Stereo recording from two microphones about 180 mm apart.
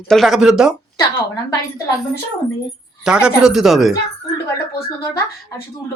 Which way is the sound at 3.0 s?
5° right (ahead or behind).